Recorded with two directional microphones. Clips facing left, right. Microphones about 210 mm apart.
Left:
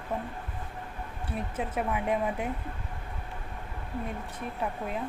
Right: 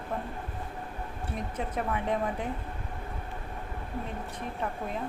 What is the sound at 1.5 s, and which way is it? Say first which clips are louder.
Speech: left 1 dB; 10° left (ahead or behind).